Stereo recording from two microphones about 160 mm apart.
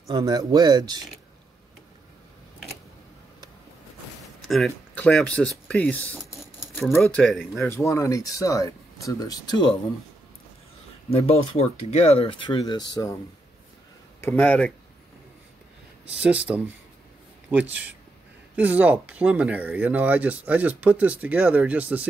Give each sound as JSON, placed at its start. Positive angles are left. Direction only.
{"t": 0.1, "sound": "speech", "side_deg": -25}
{"t": 4.5, "sound": "speech", "side_deg": 0}
{"t": 5.7, "sound": "keys jangling", "side_deg": 10}
{"t": 7.0, "sound": "speech", "side_deg": 5}
{"t": 7.5, "sound": "speech", "side_deg": 15}
{"t": 11.1, "sound": "speech", "side_deg": 40}
{"t": 14.2, "sound": "speech", "side_deg": 15}
{"t": 16.5, "sound": "speech", "side_deg": -10}
{"t": 18.6, "sound": "speech", "side_deg": -10}